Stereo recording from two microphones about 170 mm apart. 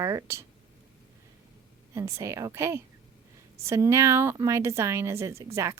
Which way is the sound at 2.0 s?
15° right (ahead or behind).